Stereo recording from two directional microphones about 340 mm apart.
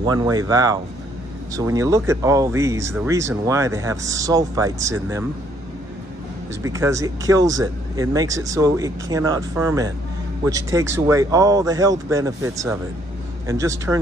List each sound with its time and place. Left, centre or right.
0.0 s speech: centre
6.6 s speech: centre